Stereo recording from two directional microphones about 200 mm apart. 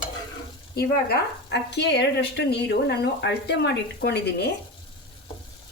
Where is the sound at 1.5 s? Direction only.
60° left (ahead or behind).